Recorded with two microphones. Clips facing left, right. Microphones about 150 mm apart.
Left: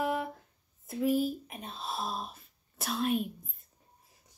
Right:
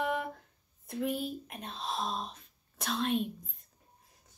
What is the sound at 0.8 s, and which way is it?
Speech, centre (ahead or behind).